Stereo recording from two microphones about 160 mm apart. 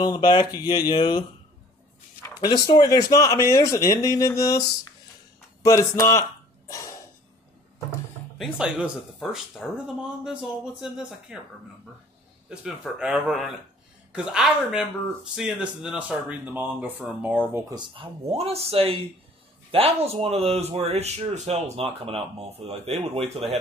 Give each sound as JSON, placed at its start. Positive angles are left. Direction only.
{"t": 0.0, "sound": "speech", "side_deg": 25}
{"t": 2.2, "sound": "speech", "side_deg": 25}
{"t": 8.4, "sound": "speech", "side_deg": -5}
{"t": 12.4, "sound": "speech", "side_deg": -5}
{"t": 17.7, "sound": "speech", "side_deg": -35}